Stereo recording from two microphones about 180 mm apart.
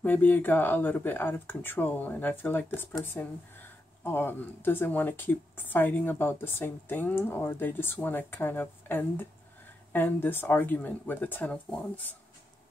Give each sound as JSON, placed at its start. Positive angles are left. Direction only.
{"t": 0.0, "sound": "speech", "side_deg": 10}